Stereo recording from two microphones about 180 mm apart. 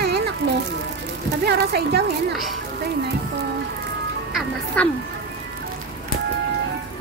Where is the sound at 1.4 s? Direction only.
65° right (ahead or behind).